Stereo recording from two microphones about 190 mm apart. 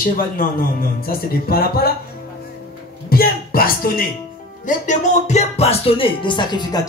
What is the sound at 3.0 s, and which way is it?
Music, 50° left (ahead or behind).